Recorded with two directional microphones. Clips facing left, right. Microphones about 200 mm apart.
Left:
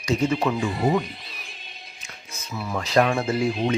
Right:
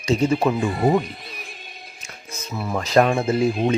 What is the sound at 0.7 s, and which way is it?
Speech, 50° right (ahead or behind).